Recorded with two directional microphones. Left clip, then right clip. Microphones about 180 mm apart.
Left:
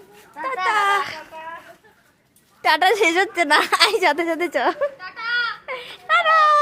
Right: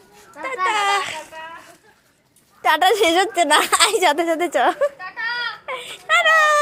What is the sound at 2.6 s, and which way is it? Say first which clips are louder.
A woman's voice: right 1 dB; 10° left (ahead or behind).